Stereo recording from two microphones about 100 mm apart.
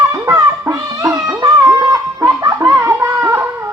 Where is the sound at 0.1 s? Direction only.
35° right (ahead or behind).